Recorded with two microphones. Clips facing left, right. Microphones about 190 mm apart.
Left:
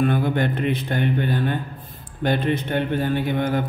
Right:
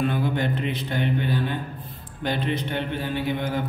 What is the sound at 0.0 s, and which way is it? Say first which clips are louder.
Mantra: left 4 dB; 55° left (ahead or behind).